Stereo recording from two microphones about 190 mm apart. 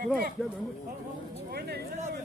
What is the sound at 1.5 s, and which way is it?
Speech, 55° right (ahead or behind).